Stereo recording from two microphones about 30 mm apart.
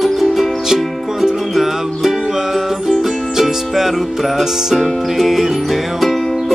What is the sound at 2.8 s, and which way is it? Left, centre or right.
Music, centre.